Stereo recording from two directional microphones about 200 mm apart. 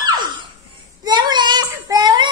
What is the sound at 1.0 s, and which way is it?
Child singing, 20° right (ahead or behind).